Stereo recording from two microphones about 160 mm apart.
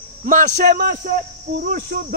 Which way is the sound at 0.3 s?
50° right (ahead or behind).